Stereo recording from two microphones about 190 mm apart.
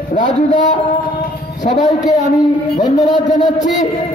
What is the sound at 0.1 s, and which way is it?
A man's voice, 40° left (ahead or behind).